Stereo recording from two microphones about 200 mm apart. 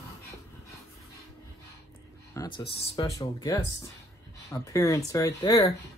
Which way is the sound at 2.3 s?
25° left (ahead or behind).